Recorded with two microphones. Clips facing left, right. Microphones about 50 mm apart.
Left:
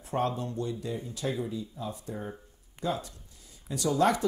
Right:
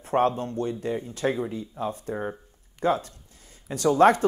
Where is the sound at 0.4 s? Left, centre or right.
Right.